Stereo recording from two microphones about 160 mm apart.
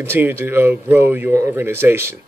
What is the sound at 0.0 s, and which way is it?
Speech, 15° right (ahead or behind).